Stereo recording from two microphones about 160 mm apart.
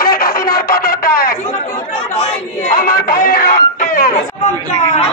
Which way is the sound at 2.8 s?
60° left (ahead or behind).